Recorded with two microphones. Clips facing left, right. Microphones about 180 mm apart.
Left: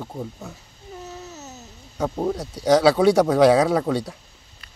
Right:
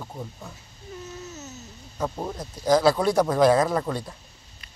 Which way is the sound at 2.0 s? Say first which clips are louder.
Left 6 dB; 50° left (ahead or behind).